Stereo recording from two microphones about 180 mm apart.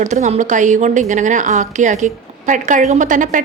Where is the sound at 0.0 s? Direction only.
40° right (ahead or behind).